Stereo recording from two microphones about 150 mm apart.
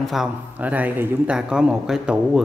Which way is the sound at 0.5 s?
10° right (ahead or behind).